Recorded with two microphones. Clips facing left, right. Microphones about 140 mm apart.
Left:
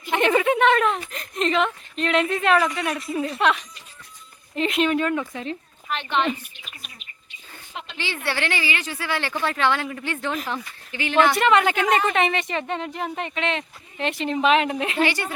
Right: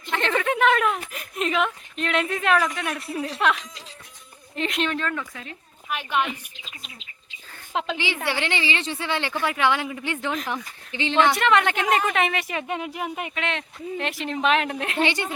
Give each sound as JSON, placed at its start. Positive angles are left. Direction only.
{"t": 0.1, "sound": "a woman's voice", "side_deg": 15}
{"t": 4.9, "sound": "speech", "side_deg": 15}
{"t": 5.2, "sound": "speech", "side_deg": 30}
{"t": 5.9, "sound": "speech", "side_deg": -10}
{"t": 7.9, "sound": "a woman's voice", "side_deg": -15}
{"t": 11.3, "sound": "a woman's voice", "side_deg": 0}
{"t": 15.0, "sound": "a woman's voice", "side_deg": -20}